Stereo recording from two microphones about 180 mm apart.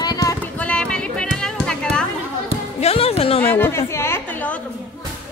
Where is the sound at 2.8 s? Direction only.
35° left (ahead or behind).